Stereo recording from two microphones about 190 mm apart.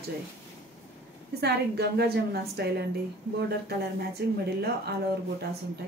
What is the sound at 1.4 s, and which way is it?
A woman's voice, 60° right (ahead or behind).